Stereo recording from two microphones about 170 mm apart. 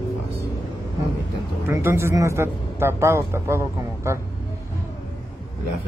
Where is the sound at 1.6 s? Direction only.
15° right (ahead or behind).